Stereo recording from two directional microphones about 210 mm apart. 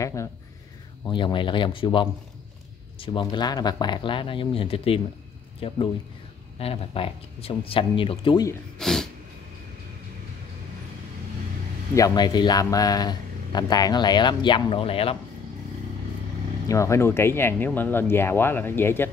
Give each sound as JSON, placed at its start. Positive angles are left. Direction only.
{"t": 0.0, "sound": "speech", "side_deg": 15}
{"t": 8.7, "sound": "speech", "side_deg": 0}
{"t": 11.9, "sound": "speech", "side_deg": 15}
{"t": 16.6, "sound": "speech", "side_deg": 15}